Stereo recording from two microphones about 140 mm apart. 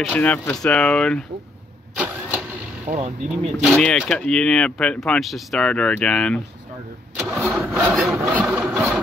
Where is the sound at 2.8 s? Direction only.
55° right (ahead or behind).